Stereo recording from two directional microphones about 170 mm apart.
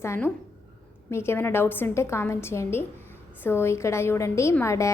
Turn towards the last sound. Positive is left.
turn(degrees=15)  # may be behind; listen again after turning